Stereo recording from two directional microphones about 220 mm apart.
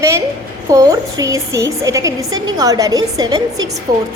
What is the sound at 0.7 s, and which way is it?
A woman's voice, 15° right (ahead or behind).